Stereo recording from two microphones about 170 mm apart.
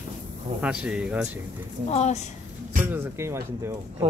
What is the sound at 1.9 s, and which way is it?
Speech, 40° left (ahead or behind).